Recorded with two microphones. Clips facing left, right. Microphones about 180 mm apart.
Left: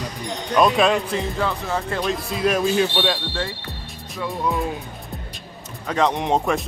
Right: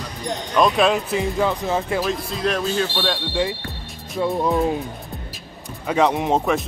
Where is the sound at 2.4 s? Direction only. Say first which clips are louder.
Left 3 dB; 10° left (ahead or behind).